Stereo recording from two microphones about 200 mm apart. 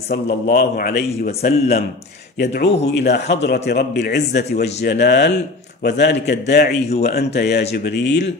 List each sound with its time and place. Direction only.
0.1 s a man's voice: 50° left (ahead or behind)